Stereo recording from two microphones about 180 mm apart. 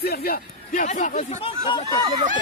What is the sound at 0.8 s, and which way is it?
Speech, 45° left (ahead or behind).